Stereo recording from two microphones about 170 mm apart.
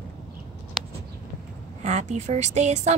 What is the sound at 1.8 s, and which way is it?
Speech, 40° right (ahead or behind).